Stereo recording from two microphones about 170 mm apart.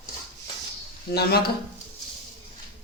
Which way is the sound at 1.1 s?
70° left (ahead or behind).